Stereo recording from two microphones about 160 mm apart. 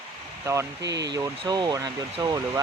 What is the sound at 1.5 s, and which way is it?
Speech, 25° right (ahead or behind).